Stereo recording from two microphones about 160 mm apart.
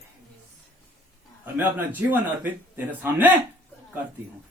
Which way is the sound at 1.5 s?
10° right (ahead or behind).